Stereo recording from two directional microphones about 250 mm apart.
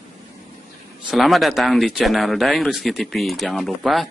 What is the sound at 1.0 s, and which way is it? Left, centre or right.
Speech, centre.